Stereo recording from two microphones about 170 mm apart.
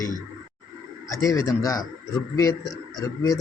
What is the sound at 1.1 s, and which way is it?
Speech, 20° left (ahead or behind).